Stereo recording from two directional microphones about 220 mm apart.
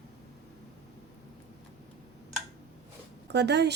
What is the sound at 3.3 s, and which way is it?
Speech, 50° right (ahead or behind).